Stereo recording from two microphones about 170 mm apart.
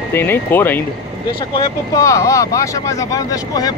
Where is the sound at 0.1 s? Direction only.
10° left (ahead or behind).